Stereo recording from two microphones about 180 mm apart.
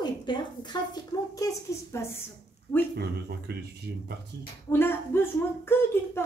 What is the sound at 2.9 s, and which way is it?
Speech, 65° right (ahead or behind).